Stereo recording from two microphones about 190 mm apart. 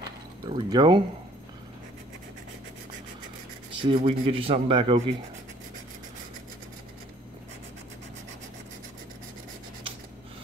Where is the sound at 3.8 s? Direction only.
30° right (ahead or behind).